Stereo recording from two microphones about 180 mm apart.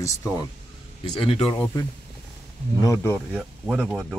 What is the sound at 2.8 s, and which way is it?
Speech, 15° left (ahead or behind).